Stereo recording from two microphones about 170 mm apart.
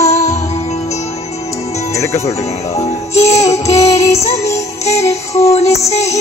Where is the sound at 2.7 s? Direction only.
40° left (ahead or behind).